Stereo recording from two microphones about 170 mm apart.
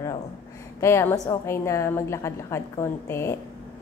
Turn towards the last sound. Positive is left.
turn(degrees=15)  # may be behind; listen again after turning